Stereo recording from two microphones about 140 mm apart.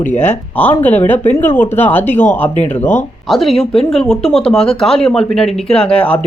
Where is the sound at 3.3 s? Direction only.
Centre (ahead or behind).